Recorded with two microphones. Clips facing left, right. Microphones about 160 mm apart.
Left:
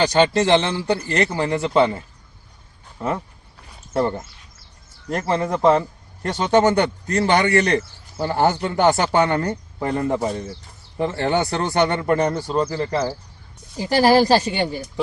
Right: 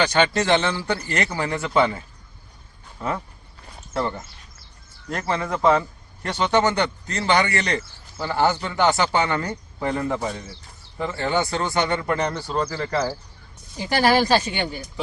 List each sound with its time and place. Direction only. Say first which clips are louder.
0.3 s a man's voice: left 3 dB; 25° left (ahead or behind)
1.0 s a man's voice: left 4 dB; 35° left (ahead or behind)
3.9 s a man's voice: left 5 dB; 45° left (ahead or behind)
10.4 s a man's voice: left 7 dB; 50° left (ahead or behind)
12.7 s a man's voice: left 2 dB; 25° left (ahead or behind)
13.7 s speech: left 4 dB; 35° left (ahead or behind)